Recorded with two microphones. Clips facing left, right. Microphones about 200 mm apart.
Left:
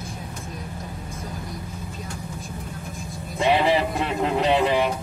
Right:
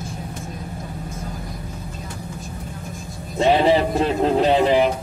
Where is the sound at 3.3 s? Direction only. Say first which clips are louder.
Right 4 dB; 35° right (ahead or behind).